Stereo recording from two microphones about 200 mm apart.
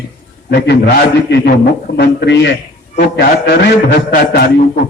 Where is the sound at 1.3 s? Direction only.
55° left (ahead or behind).